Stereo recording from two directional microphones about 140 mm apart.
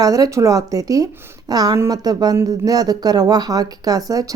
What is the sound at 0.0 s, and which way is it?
Speech, 25° right (ahead or behind).